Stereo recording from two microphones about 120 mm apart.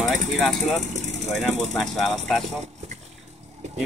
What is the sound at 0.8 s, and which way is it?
Vehicle, 80° right.